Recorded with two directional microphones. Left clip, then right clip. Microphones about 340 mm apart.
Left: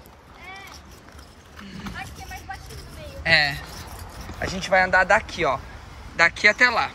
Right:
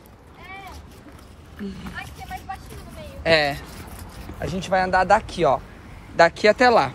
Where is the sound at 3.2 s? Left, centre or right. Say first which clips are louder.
Even; centre.